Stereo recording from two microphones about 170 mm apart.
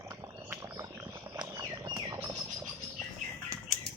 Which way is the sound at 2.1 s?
10° right (ahead or behind).